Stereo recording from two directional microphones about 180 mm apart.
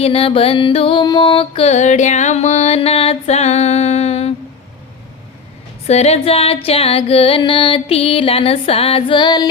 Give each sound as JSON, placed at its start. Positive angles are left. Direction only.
{"t": 0.0, "sound": "music", "side_deg": 30}
{"t": 5.9, "sound": "music", "side_deg": 35}